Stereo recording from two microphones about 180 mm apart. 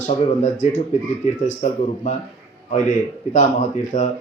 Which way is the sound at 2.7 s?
45° left (ahead or behind).